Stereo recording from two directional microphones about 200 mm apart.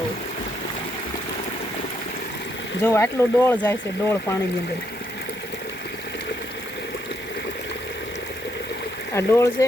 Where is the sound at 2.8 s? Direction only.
15° left (ahead or behind).